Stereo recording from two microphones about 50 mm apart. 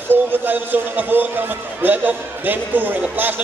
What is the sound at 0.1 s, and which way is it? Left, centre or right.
A man's voice, right.